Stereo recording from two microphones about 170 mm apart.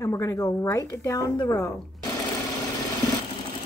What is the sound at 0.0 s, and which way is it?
A woman's voice, 15° left (ahead or behind).